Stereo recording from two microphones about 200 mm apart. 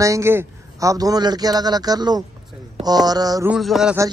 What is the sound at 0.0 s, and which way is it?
A man's voice, 15° right (ahead or behind).